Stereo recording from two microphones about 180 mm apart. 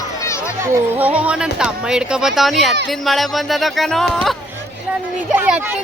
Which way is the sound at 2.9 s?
Centre (ahead or behind).